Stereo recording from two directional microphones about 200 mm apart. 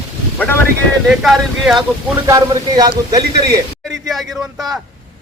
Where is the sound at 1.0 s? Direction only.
Centre (ahead or behind).